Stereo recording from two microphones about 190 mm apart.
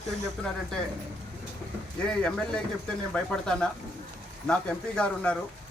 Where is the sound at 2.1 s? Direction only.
5° left (ahead or behind).